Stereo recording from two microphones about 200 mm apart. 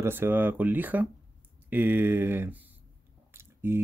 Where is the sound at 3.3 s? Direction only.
10° right (ahead or behind).